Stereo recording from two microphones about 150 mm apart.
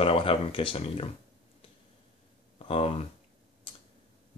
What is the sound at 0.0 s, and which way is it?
Speech, 40° left (ahead or behind).